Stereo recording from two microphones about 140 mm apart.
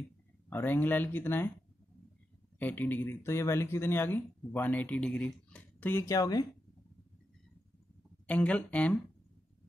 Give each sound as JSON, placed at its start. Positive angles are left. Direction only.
{"t": 0.5, "sound": "speech", "side_deg": 15}
{"t": 2.6, "sound": "speech", "side_deg": 10}
{"t": 8.3, "sound": "speech", "side_deg": 10}